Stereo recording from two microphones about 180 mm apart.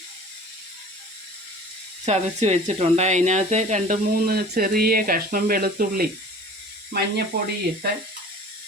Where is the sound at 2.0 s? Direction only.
35° right (ahead or behind); by 6.0 s 55° right (ahead or behind).